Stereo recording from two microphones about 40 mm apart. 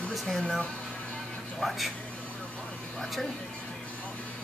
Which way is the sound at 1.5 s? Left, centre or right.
Centre.